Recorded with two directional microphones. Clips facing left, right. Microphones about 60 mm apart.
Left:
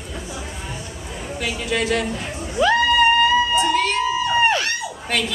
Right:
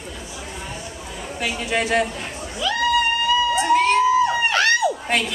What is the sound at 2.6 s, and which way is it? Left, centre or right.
Speech, left.